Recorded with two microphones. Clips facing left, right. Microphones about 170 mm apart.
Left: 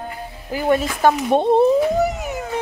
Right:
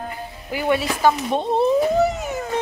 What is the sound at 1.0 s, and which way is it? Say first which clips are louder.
Speech: left 3 dB; 55° left (ahead or behind).